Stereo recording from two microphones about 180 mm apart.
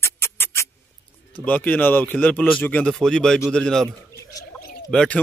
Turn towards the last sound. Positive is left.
turn(degrees=5)  # may be behind; listen again after turning